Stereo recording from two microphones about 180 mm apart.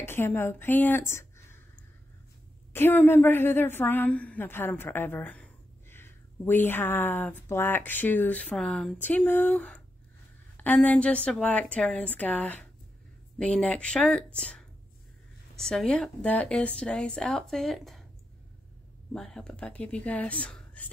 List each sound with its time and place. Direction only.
0.0 s a woman's voice: 10° left (ahead or behind)
2.7 s a woman's voice: 10° left (ahead or behind)
19.1 s a woman's voice: 5° left (ahead or behind)